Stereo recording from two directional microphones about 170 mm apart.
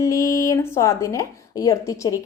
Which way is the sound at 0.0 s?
20° left (ahead or behind).